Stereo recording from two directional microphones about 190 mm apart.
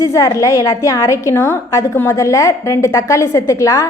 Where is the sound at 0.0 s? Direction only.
15° left (ahead or behind).